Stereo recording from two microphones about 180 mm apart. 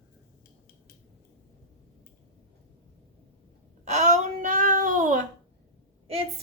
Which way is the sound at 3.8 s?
40° right (ahead or behind).